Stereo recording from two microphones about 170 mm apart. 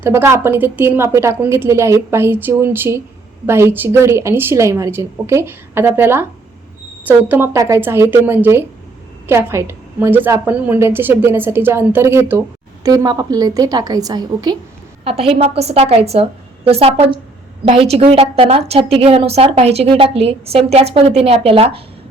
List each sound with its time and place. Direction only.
0.0 s a woman's voice: 15° right (ahead or behind)
15.0 s a woman's voice: 35° right (ahead or behind)